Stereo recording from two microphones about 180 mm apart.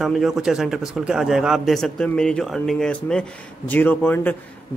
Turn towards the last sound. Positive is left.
turn(degrees=10)  # may be behind; listen again after turning